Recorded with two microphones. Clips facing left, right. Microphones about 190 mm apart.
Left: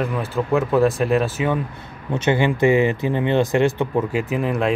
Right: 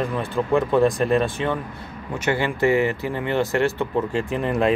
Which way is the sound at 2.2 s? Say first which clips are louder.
Left 4 dB; 20° left (ahead or behind).